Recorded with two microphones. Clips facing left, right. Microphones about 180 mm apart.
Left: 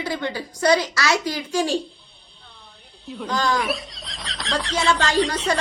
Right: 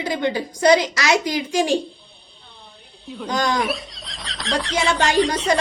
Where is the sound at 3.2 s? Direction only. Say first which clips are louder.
Right 1 dB; 15° right (ahead or behind).